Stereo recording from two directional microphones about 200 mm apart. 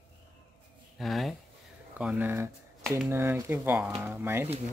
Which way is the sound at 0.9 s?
Centre (ahead or behind).